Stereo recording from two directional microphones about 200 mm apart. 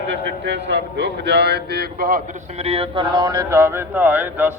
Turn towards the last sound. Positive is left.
turn(degrees=-10)  # may be behind; listen again after turning